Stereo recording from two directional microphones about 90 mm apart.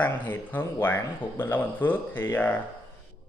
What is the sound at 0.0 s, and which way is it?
Speech, 20° left (ahead or behind).